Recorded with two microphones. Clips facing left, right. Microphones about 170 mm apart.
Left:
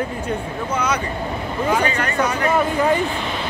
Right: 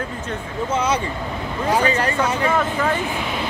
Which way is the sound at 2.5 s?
15° left (ahead or behind).